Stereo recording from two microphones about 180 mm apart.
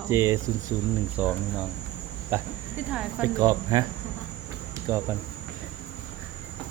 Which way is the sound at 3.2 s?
20° right (ahead or behind).